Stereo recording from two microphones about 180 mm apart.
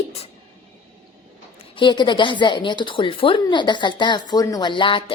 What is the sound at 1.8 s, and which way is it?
Speech, 25° left (ahead or behind).